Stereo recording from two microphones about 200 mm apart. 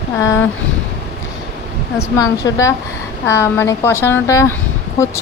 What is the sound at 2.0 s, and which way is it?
Speech, 15° left (ahead or behind).